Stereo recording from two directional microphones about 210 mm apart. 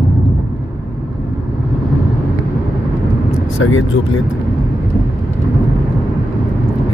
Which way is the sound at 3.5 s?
70° left (ahead or behind).